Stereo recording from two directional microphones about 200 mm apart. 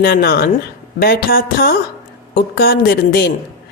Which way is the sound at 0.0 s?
50° left (ahead or behind).